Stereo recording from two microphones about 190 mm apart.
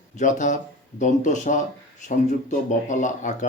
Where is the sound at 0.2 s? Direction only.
40° left (ahead or behind).